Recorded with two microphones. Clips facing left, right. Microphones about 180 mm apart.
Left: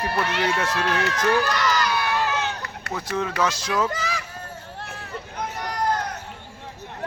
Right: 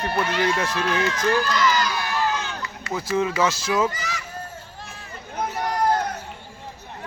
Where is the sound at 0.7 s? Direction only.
70° left (ahead or behind).